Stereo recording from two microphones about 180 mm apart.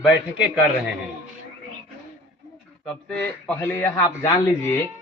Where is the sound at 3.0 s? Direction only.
10° left (ahead or behind).